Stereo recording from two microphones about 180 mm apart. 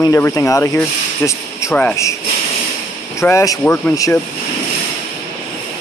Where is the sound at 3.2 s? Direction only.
15° left (ahead or behind).